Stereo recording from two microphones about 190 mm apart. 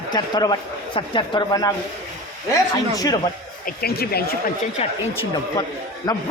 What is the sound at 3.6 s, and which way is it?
Speech, 55° left (ahead or behind).